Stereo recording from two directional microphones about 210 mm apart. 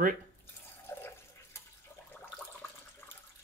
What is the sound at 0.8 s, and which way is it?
Water, 10° left (ahead or behind).